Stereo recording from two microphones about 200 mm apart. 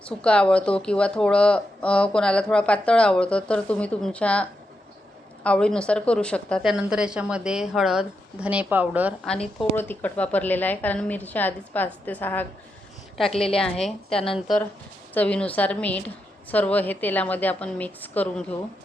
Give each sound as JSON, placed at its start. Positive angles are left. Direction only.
{"t": 0.2, "sound": "speech", "side_deg": 5}
{"t": 9.2, "sound": "a woman's voice", "side_deg": 5}